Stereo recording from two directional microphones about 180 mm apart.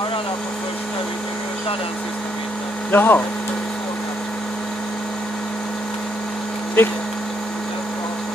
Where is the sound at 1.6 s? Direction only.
30° left (ahead or behind).